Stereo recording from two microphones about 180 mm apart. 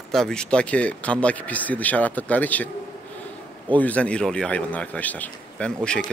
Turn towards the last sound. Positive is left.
turn(degrees=5)  # may be behind; listen again after turning